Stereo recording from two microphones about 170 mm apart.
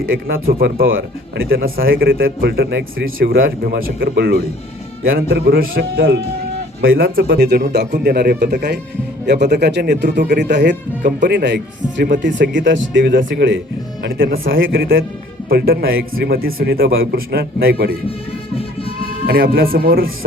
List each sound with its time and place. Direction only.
0.0 s speech: 60° right (ahead or behind); by 13.6 s 90° right
14.0 s speech: 60° right (ahead or behind)
18.5 s music: 35° left (ahead or behind)
19.2 s a man's voice: 65° right (ahead or behind)